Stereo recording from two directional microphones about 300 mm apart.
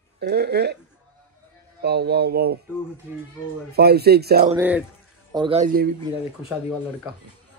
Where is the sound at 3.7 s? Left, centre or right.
Right.